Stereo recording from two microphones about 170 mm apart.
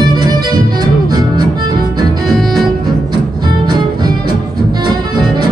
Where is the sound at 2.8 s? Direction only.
25° right (ahead or behind).